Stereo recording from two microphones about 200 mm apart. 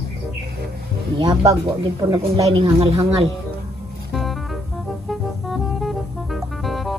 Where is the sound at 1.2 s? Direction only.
20° right (ahead or behind).